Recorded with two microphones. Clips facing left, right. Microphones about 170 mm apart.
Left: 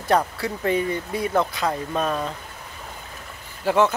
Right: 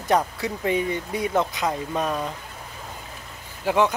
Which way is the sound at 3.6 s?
15° right (ahead or behind).